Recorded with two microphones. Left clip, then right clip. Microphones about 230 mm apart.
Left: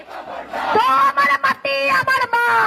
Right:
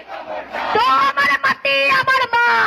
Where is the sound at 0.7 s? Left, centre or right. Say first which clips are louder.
Even; left.